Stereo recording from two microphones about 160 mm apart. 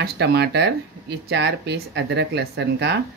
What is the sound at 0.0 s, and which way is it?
Speech, 90° right.